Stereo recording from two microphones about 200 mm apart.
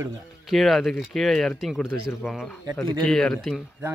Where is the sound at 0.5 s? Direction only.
Centre (ahead or behind).